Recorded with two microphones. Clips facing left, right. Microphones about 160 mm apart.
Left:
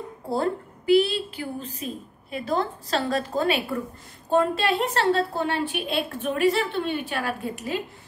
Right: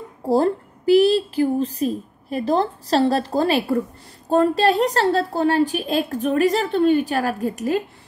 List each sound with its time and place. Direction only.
0.3 s a woman's voice: 40° right (ahead or behind)